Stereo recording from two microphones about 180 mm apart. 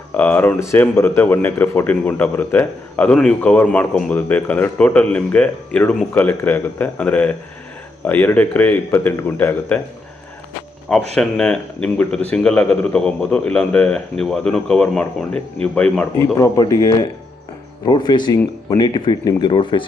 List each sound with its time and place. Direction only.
0.2 s speech: 10° left (ahead or behind)
11.1 s speech: 5° left (ahead or behind)
16.3 s speech: 20° left (ahead or behind)